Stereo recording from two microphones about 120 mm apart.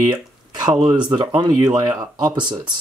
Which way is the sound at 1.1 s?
40° right (ahead or behind).